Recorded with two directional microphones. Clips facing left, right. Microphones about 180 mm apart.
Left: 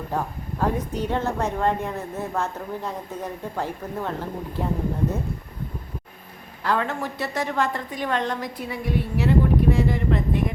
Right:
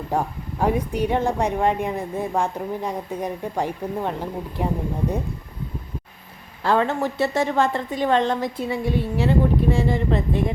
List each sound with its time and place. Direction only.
0.1 s a woman's voice: 10° right (ahead or behind)
6.6 s a woman's voice: 25° right (ahead or behind)